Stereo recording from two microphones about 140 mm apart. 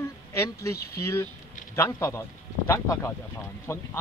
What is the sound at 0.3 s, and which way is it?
Speech, 20° left (ahead or behind).